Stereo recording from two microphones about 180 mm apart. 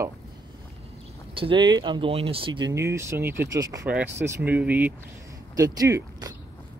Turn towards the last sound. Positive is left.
turn(degrees=-20)  # may be behind; listen again after turning